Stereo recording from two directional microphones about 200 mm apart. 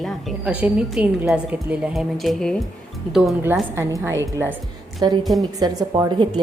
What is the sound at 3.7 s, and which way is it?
A woman's voice, 10° right (ahead or behind).